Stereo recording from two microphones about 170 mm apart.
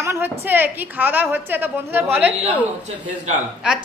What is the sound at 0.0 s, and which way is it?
A woman's voice, 15° right (ahead or behind).